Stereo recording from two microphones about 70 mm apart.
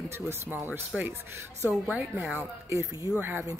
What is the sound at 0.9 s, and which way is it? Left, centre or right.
Speech, centre.